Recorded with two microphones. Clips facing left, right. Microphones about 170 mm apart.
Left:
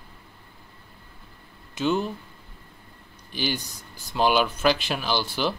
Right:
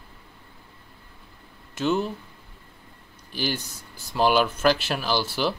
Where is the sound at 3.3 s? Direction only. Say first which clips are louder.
Even; 5° right (ahead or behind).